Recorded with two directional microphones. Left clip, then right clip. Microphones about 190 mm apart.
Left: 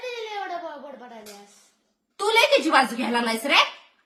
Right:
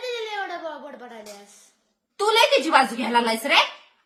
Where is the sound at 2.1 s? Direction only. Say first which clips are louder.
Right 1 dB; 10° right (ahead or behind).